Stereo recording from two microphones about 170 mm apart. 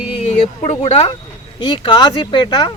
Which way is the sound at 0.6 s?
40° left (ahead or behind).